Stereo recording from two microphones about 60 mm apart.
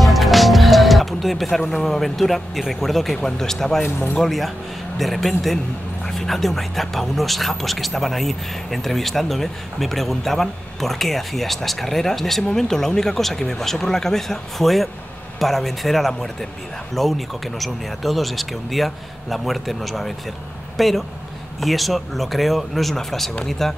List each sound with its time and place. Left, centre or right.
0.0 s speech: centre
3.8 s speech: left
4.2 s speech: centre